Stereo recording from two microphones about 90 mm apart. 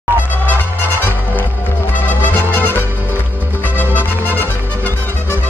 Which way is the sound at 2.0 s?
20° left (ahead or behind).